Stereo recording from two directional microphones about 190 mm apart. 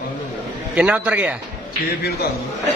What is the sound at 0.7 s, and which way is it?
Speech, 5° right (ahead or behind).